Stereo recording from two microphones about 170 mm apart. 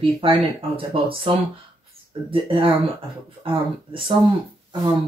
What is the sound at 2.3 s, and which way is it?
Speech, 30° right (ahead or behind).